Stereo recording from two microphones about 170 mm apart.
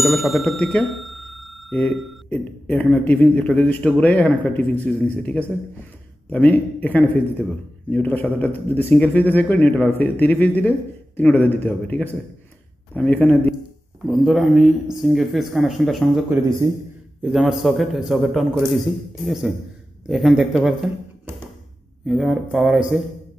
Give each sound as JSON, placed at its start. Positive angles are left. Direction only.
{"t": 0.0, "sound": "speech", "side_deg": 0}
{"t": 14.0, "sound": "speech", "side_deg": 0}
{"t": 16.6, "sound": "speech", "side_deg": -20}
{"t": 17.2, "sound": "speech", "side_deg": 0}
{"t": 22.0, "sound": "speech", "side_deg": 0}